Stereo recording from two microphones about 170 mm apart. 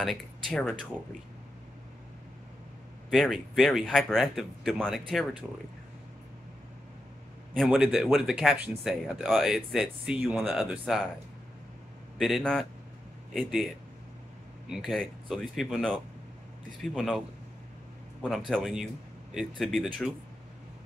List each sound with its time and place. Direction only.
0.0 s speech: centre (ahead or behind)
3.1 s speech: centre (ahead or behind)
7.5 s speech: centre (ahead or behind)
12.2 s speech: centre (ahead or behind)
14.7 s speech: centre (ahead or behind)
16.9 s speech: centre (ahead or behind)
18.5 s speech: centre (ahead or behind)